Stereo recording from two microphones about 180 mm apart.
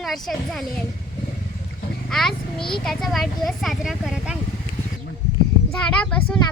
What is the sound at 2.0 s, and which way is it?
Speech, 5° left (ahead or behind).